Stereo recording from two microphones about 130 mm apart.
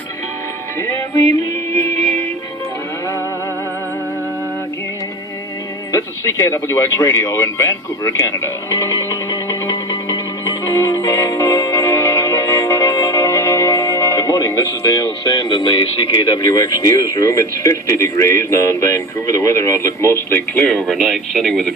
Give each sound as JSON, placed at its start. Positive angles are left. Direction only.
{"t": 5.9, "sound": "speech", "side_deg": 25}
{"t": 20.9, "sound": "speech", "side_deg": 0}